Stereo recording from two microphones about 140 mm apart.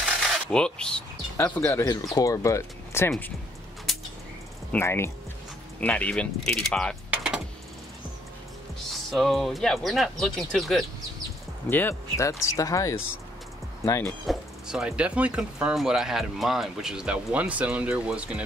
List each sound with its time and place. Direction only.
0.0 s coin: 5° left (ahead or behind)
1.4 s speech: 15° left (ahead or behind)
4.7 s speech: 20° left (ahead or behind)
7.1 s typing: 5° right (ahead or behind)
8.7 s speech: centre (ahead or behind)
11.7 s speech: 20° left (ahead or behind)
14.0 s speech: centre (ahead or behind)